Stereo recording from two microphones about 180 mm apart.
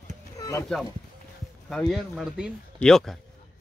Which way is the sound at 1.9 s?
Centre (ahead or behind).